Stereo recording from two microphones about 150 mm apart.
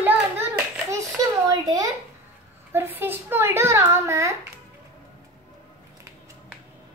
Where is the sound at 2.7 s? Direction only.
15° right (ahead or behind).